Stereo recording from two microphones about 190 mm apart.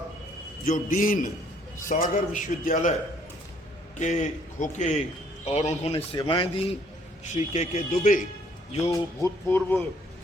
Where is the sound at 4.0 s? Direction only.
40° left (ahead or behind).